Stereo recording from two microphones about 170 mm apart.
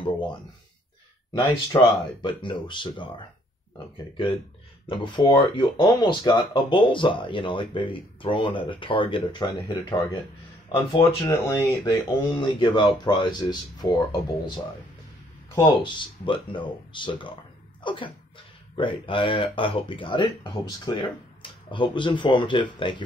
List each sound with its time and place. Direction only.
1.3 s speech: 25° left (ahead or behind)
4.8 s speech: 30° left (ahead or behind)
11.2 s speech: 15° left (ahead or behind)